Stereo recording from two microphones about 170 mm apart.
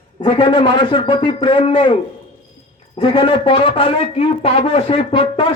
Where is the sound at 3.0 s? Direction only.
30° left (ahead or behind).